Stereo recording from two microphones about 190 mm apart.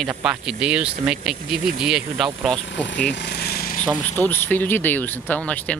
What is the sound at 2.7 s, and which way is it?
Speech, 75° left (ahead or behind).